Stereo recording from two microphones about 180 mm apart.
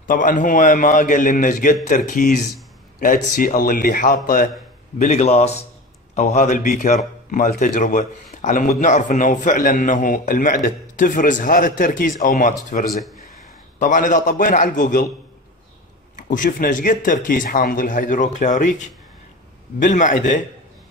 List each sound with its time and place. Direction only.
0.0 s a man's voice: 45° left (ahead or behind)
4.9 s a man's voice: 40° left (ahead or behind)
16.2 s a man's voice: 50° left (ahead or behind)